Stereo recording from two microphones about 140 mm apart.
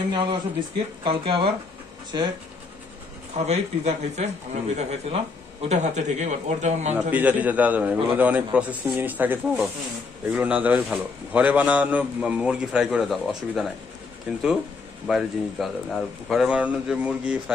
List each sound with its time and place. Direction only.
0.1 s speech: 35° right (ahead or behind)
3.3 s a man's voice: 50° right (ahead or behind)
7.1 s a man's voice: 10° right (ahead or behind)
15.0 s speech: centre (ahead or behind)